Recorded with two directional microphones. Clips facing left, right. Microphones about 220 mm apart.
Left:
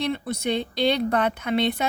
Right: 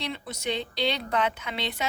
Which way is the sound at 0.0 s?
50° left (ahead or behind).